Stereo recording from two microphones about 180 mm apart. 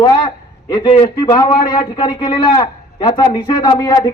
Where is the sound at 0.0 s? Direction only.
25° left (ahead or behind).